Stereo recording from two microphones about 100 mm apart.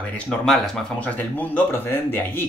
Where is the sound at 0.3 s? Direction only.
10° left (ahead or behind).